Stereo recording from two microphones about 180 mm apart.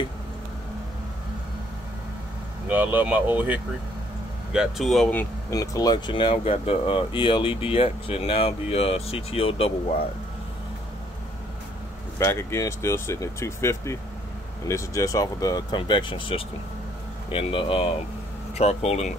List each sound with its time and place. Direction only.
2.7 s speech: 10° right (ahead or behind)
5.5 s speech: 20° left (ahead or behind)
12.2 s speech: 15° left (ahead or behind); by 19.1 s 35° left (ahead or behind)